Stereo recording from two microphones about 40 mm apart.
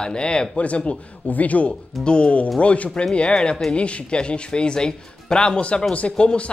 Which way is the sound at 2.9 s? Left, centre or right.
Left.